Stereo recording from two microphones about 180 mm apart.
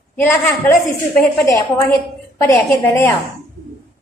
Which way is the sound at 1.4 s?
15° left (ahead or behind).